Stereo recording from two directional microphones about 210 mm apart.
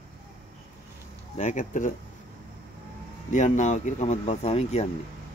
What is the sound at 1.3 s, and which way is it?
Speech, 35° left (ahead or behind).